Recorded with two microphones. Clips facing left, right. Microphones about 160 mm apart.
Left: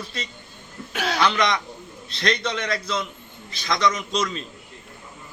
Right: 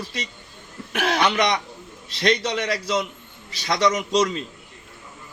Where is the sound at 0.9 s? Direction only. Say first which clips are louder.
Right 3 dB; 65° right (ahead or behind).